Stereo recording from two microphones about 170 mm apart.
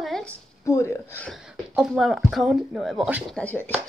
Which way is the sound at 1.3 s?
5° right (ahead or behind).